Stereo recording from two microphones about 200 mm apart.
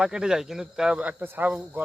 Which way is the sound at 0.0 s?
5° right (ahead or behind).